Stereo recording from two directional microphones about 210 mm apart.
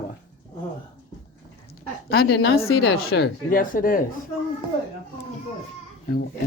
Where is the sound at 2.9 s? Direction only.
50° left (ahead or behind).